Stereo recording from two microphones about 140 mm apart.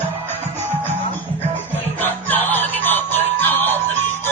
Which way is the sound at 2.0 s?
15° left (ahead or behind).